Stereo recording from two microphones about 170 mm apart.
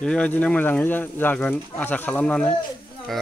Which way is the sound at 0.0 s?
5° left (ahead or behind).